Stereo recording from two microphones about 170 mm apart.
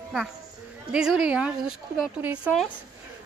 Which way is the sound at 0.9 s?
5° right (ahead or behind).